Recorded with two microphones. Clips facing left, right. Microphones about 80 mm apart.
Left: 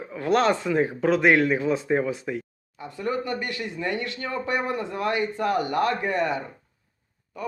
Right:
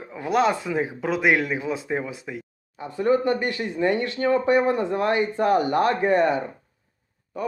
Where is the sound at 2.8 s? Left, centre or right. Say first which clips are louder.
Right 7 dB; right.